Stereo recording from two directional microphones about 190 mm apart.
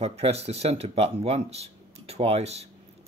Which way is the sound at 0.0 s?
35° right (ahead or behind).